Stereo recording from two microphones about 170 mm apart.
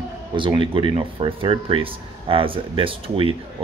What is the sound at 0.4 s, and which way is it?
Speech, 30° right (ahead or behind).